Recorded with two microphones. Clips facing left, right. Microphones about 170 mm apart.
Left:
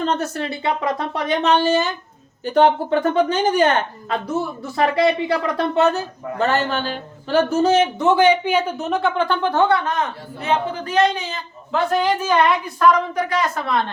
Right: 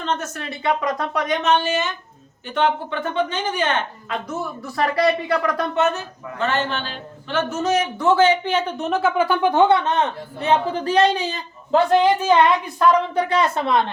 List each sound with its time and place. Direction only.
0.0 s a woman's voice: 35° left (ahead or behind)
4.3 s a woman's voice: 25° left (ahead or behind); by 13.9 s 20° right (ahead or behind)